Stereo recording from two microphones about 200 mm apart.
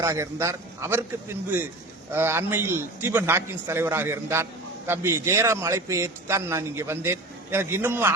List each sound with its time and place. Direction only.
0.0 s a man's voice: 15° right (ahead or behind)